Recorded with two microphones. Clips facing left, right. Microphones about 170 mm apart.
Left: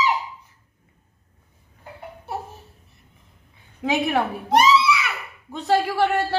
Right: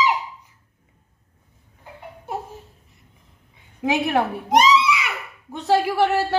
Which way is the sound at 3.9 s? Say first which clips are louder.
Even; 15° right (ahead or behind).